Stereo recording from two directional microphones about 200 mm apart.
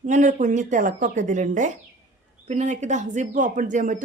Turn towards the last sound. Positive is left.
turn(degrees=-40)  # may be behind; listen again after turning